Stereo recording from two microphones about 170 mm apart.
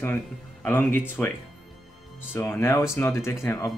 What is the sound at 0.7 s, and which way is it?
Speech, 10° left (ahead or behind).